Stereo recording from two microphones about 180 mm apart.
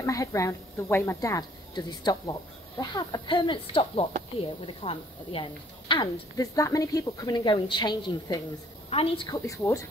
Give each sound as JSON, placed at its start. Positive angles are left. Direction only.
{"t": 0.0, "sound": "a woman's voice", "side_deg": 15}
{"t": 9.5, "sound": "a woman's voice", "side_deg": 15}